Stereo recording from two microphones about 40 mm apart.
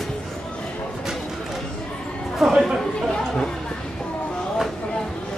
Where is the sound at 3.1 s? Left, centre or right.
Centre.